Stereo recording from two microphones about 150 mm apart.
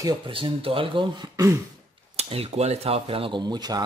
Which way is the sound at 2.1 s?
40° right (ahead or behind).